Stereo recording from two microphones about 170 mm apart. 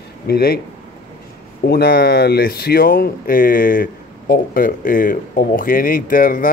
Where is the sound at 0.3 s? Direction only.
65° left (ahead or behind).